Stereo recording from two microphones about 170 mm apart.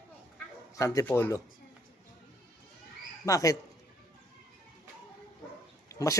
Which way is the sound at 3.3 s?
20° left (ahead or behind).